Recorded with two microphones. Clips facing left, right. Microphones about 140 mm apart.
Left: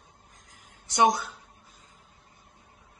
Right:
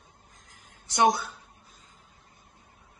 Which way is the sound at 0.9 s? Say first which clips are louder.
Even; 15° left (ahead or behind).